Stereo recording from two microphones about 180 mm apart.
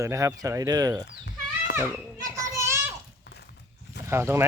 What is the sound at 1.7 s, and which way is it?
Children playing, 15° right (ahead or behind).